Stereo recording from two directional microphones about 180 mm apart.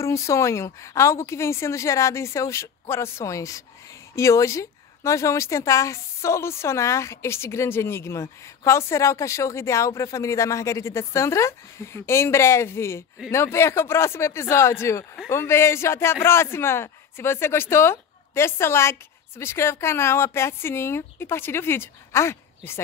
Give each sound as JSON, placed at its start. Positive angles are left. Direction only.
{"t": 0.0, "sound": "speech", "side_deg": 15}